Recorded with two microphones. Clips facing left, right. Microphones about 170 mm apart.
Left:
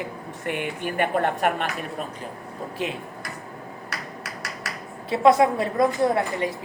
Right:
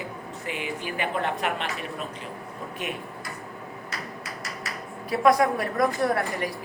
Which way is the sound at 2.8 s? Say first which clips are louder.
Left 4 dB; 30° left (ahead or behind).